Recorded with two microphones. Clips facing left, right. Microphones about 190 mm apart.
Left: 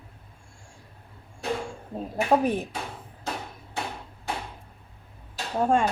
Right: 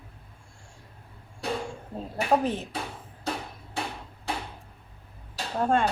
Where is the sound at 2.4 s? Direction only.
15° left (ahead or behind).